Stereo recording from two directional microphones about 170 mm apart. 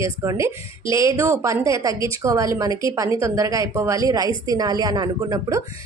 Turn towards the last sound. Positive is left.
turn(degrees=-25)  # may be behind; listen again after turning